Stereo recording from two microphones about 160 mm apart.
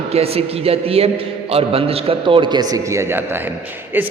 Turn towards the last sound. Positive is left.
turn(degrees=-15)  # may be behind; listen again after turning